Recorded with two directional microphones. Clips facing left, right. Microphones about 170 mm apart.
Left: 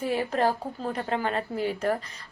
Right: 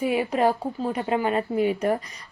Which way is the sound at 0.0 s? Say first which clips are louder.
Right 3 dB; 10° right (ahead or behind).